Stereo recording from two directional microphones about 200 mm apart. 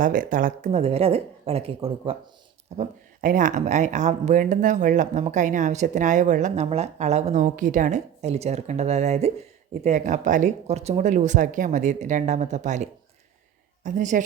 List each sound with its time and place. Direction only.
0.0 s speech: 40° right (ahead or behind)
2.7 s speech: 40° right (ahead or behind)